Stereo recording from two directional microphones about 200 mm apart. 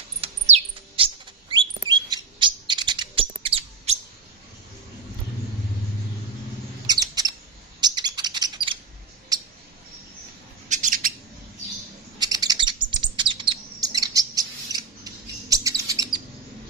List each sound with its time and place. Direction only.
0.2 s chirp: 30° right (ahead or behind)
6.9 s a sound: 20° right (ahead or behind)
7.8 s bird: 20° right (ahead or behind)
9.3 s a sound: 20° right (ahead or behind)
10.7 s bird: 40° right (ahead or behind)
12.2 s bird: 20° right (ahead or behind)
15.5 s chirp: 15° right (ahead or behind)